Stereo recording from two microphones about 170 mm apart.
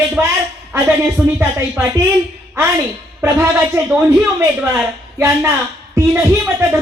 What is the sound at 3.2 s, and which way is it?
Speech, 15° right (ahead or behind).